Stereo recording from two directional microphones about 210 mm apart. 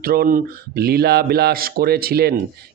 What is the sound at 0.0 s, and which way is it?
Speech, 45° right (ahead or behind).